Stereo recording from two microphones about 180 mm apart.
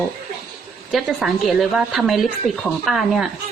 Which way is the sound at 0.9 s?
5° right (ahead or behind).